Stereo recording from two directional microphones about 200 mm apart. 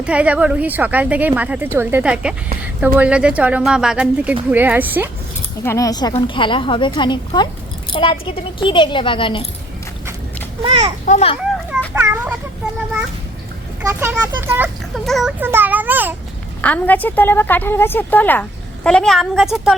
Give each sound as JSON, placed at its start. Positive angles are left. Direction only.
{"t": 0.0, "sound": "a woman's voice", "side_deg": -5}
{"t": 5.6, "sound": "a woman's voice", "side_deg": 15}
{"t": 10.6, "sound": "a child's voice", "side_deg": -30}
{"t": 11.0, "sound": "a child's voice", "side_deg": 35}
{"t": 11.5, "sound": "a sound", "side_deg": 0}
{"t": 11.9, "sound": "a sound", "side_deg": -10}
{"t": 13.8, "sound": "a woman's voice", "side_deg": -10}
{"t": 14.9, "sound": "speech", "side_deg": 0}
{"t": 15.4, "sound": "a woman's voice", "side_deg": -10}
{"t": 16.6, "sound": "a woman's voice", "side_deg": 5}